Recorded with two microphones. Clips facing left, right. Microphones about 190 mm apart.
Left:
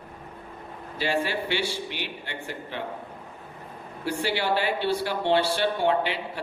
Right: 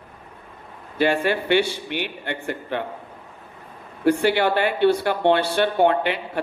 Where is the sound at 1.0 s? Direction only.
55° right (ahead or behind).